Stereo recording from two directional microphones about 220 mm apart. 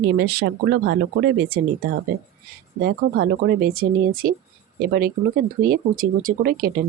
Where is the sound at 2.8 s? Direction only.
45° right (ahead or behind).